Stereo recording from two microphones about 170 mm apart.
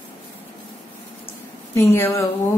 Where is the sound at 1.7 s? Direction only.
15° left (ahead or behind).